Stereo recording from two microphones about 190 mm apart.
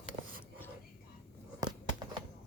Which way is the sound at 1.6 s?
25° right (ahead or behind).